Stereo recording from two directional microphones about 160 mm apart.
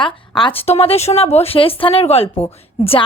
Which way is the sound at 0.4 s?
40° left (ahead or behind).